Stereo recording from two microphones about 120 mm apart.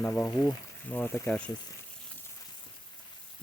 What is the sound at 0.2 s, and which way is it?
Speech, 10° left (ahead or behind).